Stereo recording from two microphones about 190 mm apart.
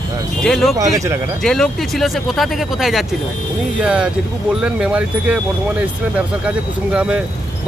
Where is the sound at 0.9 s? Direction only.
15° right (ahead or behind).